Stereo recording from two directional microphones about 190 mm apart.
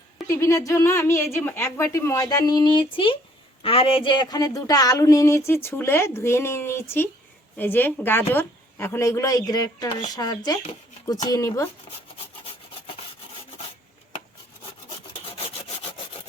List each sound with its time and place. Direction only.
0.3 s speech: 15° left (ahead or behind)